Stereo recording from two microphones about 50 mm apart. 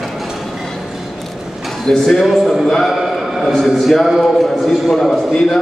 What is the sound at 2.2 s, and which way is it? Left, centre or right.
A man's voice, centre.